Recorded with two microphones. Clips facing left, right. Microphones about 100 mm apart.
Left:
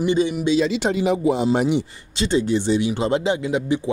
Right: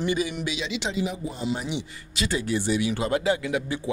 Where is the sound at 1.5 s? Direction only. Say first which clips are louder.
Left 11 dB; 50° left (ahead or behind).